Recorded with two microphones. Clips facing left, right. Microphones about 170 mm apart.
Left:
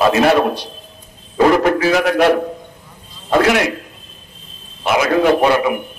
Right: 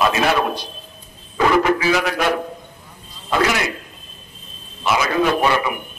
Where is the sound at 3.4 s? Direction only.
65° left (ahead or behind).